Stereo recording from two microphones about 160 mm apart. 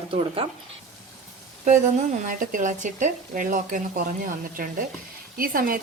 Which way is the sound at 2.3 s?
55° right (ahead or behind).